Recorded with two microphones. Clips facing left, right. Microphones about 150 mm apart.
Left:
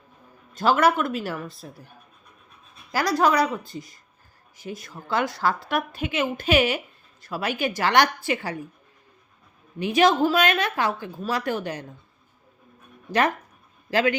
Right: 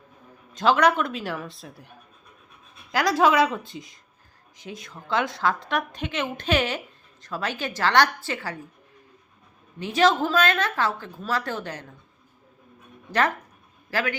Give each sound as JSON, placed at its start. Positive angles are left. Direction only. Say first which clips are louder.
{"t": 0.5, "sound": "speech", "louder": "even", "side_deg": 5}
{"t": 2.9, "sound": "a woman's voice", "louder": "right 1 dB", "side_deg": 0}
{"t": 9.8, "sound": "a woman's voice", "louder": "left 2 dB", "side_deg": 15}
{"t": 13.1, "sound": "a man's voice", "louder": "left 1 dB", "side_deg": 15}